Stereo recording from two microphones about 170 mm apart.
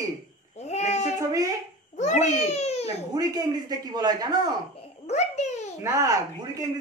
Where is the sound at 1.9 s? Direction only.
40° left (ahead or behind).